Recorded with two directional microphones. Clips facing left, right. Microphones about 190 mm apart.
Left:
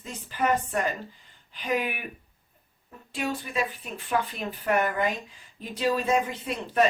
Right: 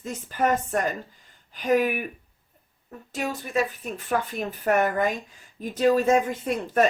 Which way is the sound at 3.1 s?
45° right (ahead or behind).